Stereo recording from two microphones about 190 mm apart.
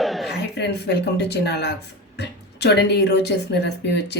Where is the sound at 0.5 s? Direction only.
65° left (ahead or behind).